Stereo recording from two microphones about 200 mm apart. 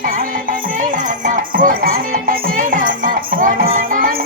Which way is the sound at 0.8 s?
40° right (ahead or behind).